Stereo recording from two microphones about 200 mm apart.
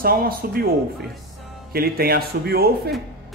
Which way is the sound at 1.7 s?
50° right (ahead or behind).